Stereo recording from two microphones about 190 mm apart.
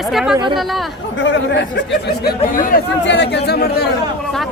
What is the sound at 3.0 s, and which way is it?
Speech, 65° left (ahead or behind).